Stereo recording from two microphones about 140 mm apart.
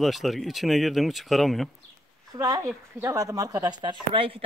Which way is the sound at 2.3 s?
25° right (ahead or behind).